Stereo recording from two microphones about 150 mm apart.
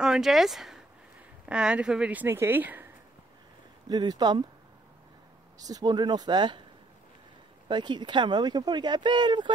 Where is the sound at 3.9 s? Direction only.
30° right (ahead or behind).